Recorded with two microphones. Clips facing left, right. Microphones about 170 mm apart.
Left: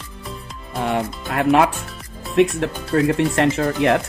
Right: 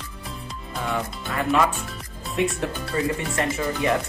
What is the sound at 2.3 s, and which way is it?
Speech, 70° left (ahead or behind).